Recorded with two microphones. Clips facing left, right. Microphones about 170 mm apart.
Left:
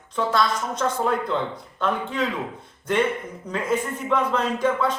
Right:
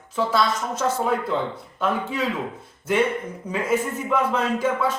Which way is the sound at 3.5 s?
10° right (ahead or behind).